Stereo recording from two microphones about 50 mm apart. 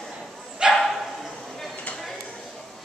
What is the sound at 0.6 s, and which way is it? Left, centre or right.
Dog, centre.